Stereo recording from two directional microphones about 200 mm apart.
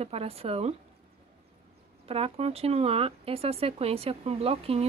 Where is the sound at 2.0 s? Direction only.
30° right (ahead or behind).